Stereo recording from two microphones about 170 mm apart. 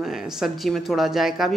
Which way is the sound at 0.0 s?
Centre (ahead or behind).